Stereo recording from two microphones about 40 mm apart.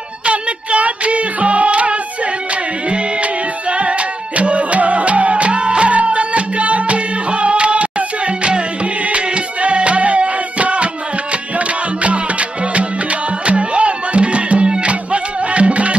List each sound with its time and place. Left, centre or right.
0.3 s child singing: right
4.4 s music: right
9.1 s music: right
12.0 s music: right